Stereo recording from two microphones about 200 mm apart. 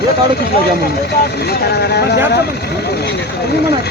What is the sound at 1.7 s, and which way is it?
Speech, 55° left (ahead or behind).